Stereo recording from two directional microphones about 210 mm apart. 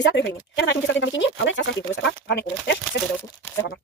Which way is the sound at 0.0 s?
55° left (ahead or behind).